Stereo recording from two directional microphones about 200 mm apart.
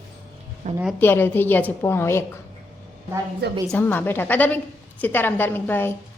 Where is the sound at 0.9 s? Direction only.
10° left (ahead or behind).